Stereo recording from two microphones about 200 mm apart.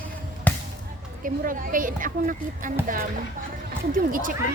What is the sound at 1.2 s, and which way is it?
Speech, 45° right (ahead or behind).